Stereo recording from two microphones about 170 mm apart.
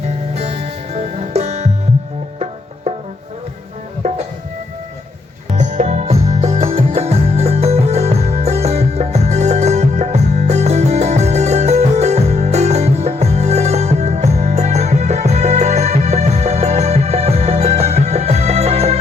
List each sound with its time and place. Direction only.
0.3 s music: 40° right (ahead or behind)
4.0 s music: 40° right (ahead or behind)
5.5 s music: 45° right (ahead or behind)